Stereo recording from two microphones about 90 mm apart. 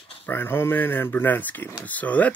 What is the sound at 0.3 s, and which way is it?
Speech, 25° left (ahead or behind).